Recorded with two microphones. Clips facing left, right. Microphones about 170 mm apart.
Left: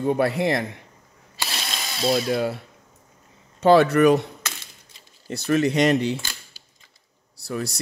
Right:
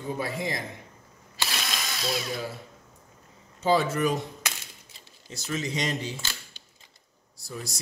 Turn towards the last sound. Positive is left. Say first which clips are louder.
# left 9 dB
turn(degrees=70)  # may be behind; listen again after turning